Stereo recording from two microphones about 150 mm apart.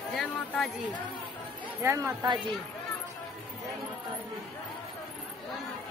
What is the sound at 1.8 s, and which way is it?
Speech, 25° right (ahead or behind).